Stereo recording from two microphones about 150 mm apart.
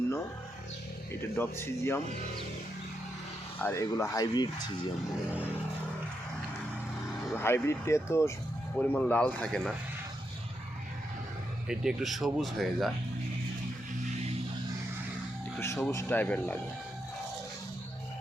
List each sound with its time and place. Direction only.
1.4 s speech: 15° left (ahead or behind)
3.6 s speech: 15° left (ahead or behind)
7.3 s speech: 15° left (ahead or behind)
11.7 s speech: 5° right (ahead or behind)
15.5 s speech: 15° left (ahead or behind)